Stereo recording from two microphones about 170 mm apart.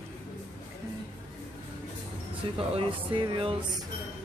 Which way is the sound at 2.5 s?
30° right (ahead or behind).